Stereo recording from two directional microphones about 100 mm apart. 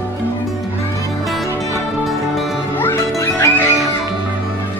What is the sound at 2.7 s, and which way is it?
Music, 20° left (ahead or behind).